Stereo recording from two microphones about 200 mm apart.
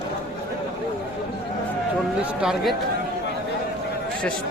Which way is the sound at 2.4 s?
Centre (ahead or behind).